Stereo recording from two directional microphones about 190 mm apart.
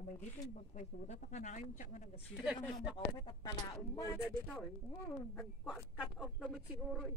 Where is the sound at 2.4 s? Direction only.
Centre (ahead or behind).